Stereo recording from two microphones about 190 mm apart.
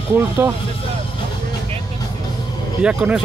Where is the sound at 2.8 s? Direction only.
5° right (ahead or behind).